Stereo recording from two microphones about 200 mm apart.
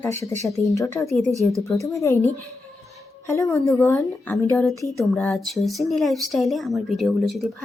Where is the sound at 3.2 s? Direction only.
15° left (ahead or behind).